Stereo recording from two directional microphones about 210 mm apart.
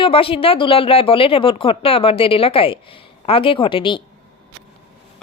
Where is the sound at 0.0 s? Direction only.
25° left (ahead or behind).